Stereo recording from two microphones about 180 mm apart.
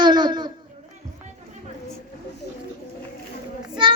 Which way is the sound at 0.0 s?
25° right (ahead or behind).